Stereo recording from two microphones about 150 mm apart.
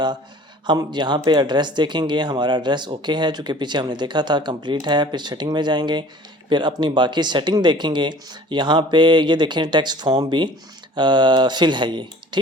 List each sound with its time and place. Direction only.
0.7 s speech: 30° right (ahead or behind)